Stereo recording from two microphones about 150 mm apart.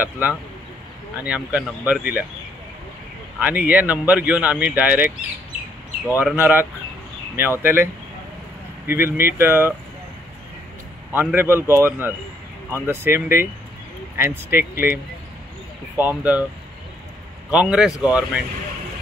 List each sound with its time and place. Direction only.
0.0 s speech: 10° right (ahead or behind)
3.3 s speech: 10° right (ahead or behind)
11.1 s speech: 15° right (ahead or behind)
16.0 s speech: 10° right (ahead or behind)
17.5 s speech: 5° right (ahead or behind)